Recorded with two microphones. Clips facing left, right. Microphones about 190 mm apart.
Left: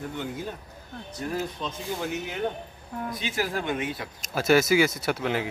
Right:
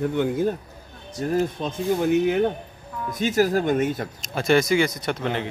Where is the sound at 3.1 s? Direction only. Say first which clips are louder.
Right 11 dB; 45° right (ahead or behind).